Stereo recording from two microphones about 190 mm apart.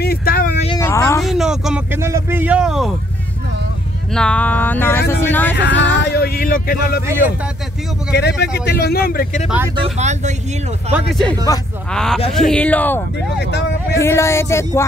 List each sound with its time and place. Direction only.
0.0 s vehicle: 55° left (ahead or behind)
0.7 s a sound: 15° left (ahead or behind)
1.2 s speech: centre (ahead or behind)
4.1 s speech: 5° left (ahead or behind)
5.5 s speech: 70° left (ahead or behind); by 7.0 s 50° left (ahead or behind)
8.1 s speech: 60° left (ahead or behind)
9.9 s speech: 35° right (ahead or behind)
10.9 s speech: 10° right (ahead or behind)
11.9 s speech: 5° left (ahead or behind)
13.4 s speech: 65° left (ahead or behind)
13.9 s speech: 15° left (ahead or behind)